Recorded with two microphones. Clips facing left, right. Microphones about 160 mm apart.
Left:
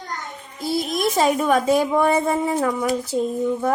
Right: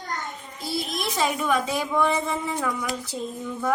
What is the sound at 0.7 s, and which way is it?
A woman's voice, 45° left (ahead or behind).